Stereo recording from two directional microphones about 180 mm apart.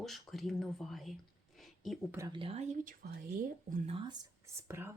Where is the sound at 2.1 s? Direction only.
25° right (ahead or behind).